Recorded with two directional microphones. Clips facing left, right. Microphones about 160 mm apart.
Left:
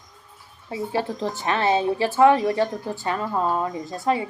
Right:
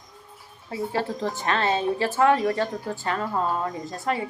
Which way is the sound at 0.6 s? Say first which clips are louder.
Left 1 dB; 20° left (ahead or behind).